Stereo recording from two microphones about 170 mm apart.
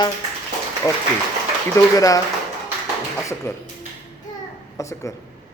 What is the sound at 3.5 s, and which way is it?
Speech, 15° left (ahead or behind).